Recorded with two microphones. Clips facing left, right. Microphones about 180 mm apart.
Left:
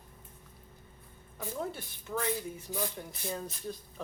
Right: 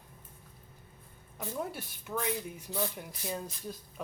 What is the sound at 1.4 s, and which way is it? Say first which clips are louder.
Speech: even; 10° right (ahead or behind).